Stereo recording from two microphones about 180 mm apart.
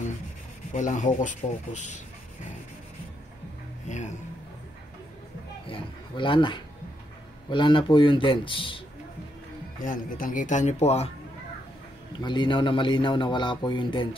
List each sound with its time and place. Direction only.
0.7 s speech: 45° left (ahead or behind)
3.8 s speech: 40° left (ahead or behind)
5.7 s speech: 30° left (ahead or behind)
9.8 s speech: 50° left (ahead or behind)
12.1 s speech: 25° left (ahead or behind)